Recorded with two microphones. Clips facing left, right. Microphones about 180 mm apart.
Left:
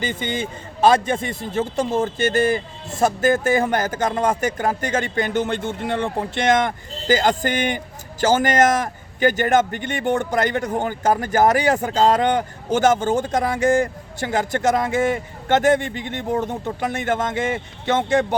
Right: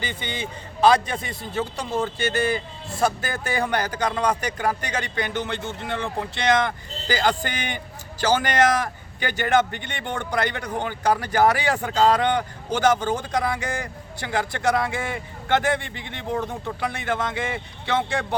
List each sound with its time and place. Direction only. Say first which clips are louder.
0.0 s speech: left 6 dB; 45° left (ahead or behind)
16.4 s speech: left 4 dB; 20° left (ahead or behind)
16.8 s speech: left 4 dB; 45° left (ahead or behind)